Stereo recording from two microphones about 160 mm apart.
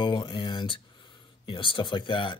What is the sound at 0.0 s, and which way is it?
Speech, 30° left (ahead or behind).